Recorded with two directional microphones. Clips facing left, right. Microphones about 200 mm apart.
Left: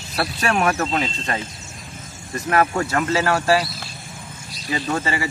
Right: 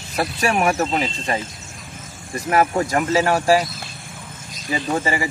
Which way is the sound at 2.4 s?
15° right (ahead or behind).